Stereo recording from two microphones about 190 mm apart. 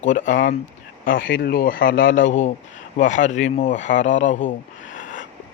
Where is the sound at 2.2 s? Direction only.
40° left (ahead or behind).